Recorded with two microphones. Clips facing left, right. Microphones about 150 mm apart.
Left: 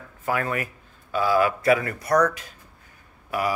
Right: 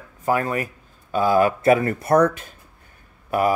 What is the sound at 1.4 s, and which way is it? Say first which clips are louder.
Speech: right 5 dB; 45° right (ahead or behind).